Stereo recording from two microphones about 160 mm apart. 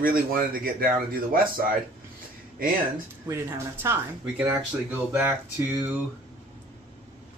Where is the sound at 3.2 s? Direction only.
15° right (ahead or behind).